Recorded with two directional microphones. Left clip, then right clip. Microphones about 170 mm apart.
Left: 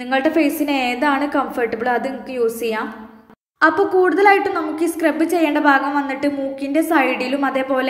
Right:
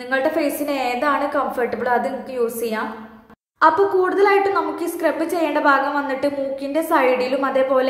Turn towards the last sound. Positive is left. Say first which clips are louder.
# right 1 dB
turn(degrees=10)  # may be behind; listen again after turning